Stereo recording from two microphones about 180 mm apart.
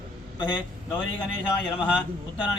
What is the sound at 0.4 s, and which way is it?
Speech, 25° left (ahead or behind).